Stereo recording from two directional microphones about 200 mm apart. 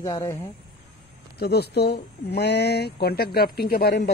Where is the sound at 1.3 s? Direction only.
55° left (ahead or behind).